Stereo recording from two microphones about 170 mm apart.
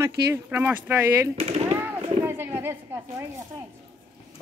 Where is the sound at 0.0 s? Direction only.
15° right (ahead or behind).